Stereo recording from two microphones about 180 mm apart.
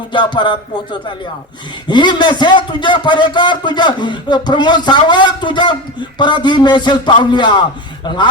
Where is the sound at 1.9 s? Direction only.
25° left (ahead or behind).